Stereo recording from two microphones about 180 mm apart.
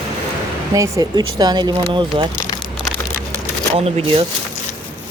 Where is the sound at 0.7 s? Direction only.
20° right (ahead or behind).